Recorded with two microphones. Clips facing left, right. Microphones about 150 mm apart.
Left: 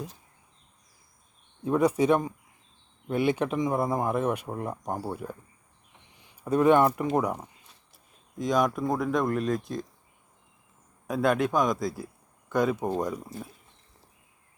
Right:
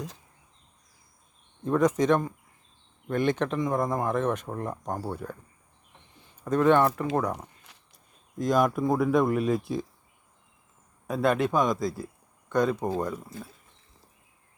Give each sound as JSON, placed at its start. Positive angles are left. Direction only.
{"t": 1.6, "sound": "speech", "side_deg": 10}
{"t": 7.7, "sound": "walk", "side_deg": -90}
{"t": 8.4, "sound": "speech", "side_deg": 0}
{"t": 11.0, "sound": "speech", "side_deg": 0}